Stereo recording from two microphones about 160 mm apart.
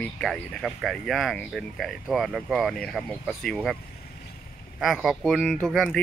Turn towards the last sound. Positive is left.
turn(degrees=5)  # may be behind; listen again after turning